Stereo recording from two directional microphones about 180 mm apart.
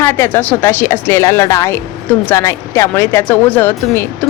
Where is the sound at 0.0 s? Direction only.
15° left (ahead or behind).